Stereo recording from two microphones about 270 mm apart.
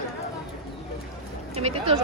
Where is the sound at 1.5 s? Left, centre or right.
Right.